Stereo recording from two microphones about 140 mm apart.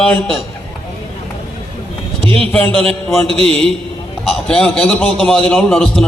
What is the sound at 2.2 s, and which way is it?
Speech, 40° right (ahead or behind).